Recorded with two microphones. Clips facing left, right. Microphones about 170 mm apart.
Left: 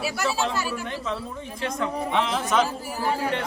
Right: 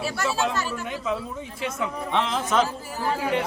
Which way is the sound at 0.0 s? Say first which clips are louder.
Even; 5° left (ahead or behind).